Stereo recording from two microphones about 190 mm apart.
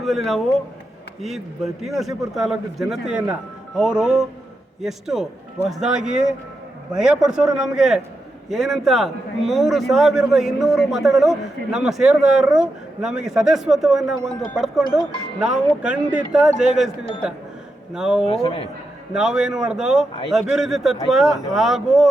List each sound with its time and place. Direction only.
0.0 s a man's voice: centre (ahead or behind)
18.3 s a man's voice: 30° left (ahead or behind)
19.1 s a man's voice: 5° right (ahead or behind)